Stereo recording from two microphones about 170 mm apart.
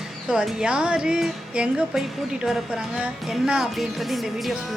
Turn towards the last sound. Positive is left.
turn(degrees=0)  # may be behind; listen again after turning